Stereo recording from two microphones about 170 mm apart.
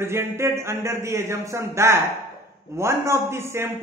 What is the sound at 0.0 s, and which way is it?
A man's voice, 15° right (ahead or behind).